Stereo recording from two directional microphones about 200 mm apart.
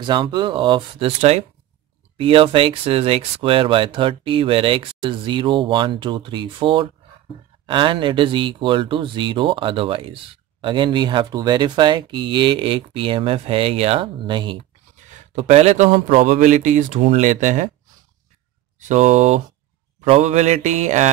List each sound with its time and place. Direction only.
0.0 s a man's voice: 25° right (ahead or behind)
18.8 s a man's voice: 35° right (ahead or behind)